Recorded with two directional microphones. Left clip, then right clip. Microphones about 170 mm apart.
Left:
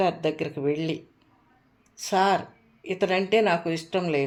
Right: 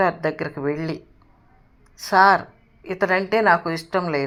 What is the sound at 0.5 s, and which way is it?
Speech, 40° right (ahead or behind).